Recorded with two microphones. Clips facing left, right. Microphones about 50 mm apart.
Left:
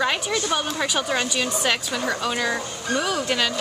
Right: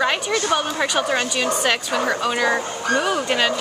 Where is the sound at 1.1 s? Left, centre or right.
Centre.